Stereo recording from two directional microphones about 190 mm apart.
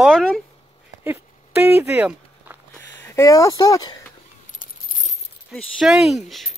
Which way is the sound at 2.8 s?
15° left (ahead or behind).